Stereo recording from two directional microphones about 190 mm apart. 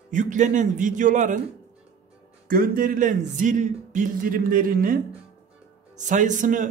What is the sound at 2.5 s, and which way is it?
Speech, 50° right (ahead or behind).